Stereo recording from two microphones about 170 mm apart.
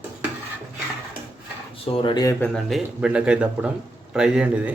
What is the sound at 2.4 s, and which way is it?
Speech, centre (ahead or behind).